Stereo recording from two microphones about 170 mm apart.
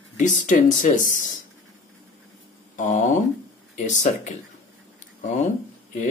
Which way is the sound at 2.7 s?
45° left (ahead or behind).